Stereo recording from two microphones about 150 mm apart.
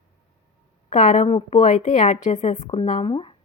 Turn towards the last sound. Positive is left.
turn(degrees=35)  # may be behind; listen again after turning